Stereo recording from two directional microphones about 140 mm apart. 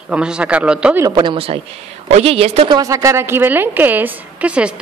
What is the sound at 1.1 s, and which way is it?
A woman's voice, 35° right (ahead or behind).